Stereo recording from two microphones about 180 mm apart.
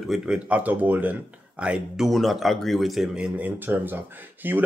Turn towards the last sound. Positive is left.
turn(degrees=-10)  # may be behind; listen again after turning